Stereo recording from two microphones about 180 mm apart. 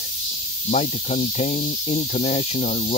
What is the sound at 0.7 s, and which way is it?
Speech, 40° left (ahead or behind).